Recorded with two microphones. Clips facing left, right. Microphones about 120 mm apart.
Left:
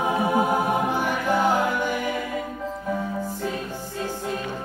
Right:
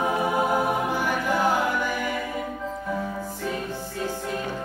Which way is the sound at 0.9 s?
25° left (ahead or behind).